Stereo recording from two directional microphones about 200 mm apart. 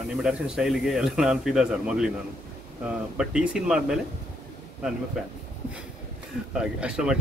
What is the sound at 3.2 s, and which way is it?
Speech, 5° right (ahead or behind).